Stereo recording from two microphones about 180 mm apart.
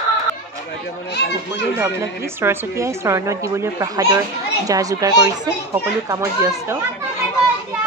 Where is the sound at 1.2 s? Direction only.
65° left (ahead or behind).